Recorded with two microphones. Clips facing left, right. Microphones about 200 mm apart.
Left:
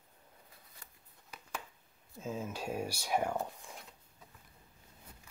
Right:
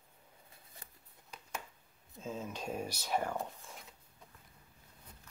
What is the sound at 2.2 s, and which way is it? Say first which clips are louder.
Speech: left 2 dB; 10° left (ahead or behind).